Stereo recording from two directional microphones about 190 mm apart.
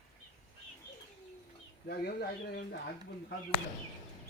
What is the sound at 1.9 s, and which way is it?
Speech, 60° left (ahead or behind).